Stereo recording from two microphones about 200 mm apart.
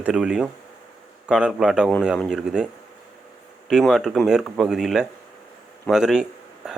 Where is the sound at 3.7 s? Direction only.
Centre (ahead or behind).